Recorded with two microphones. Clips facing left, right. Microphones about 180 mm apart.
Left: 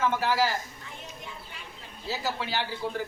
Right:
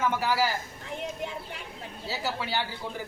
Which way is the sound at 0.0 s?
10° right (ahead or behind).